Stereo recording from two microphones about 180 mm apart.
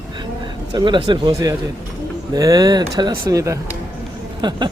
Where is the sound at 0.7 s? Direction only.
25° right (ahead or behind).